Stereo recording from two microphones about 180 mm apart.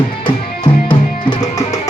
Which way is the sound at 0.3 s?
25° left (ahead or behind).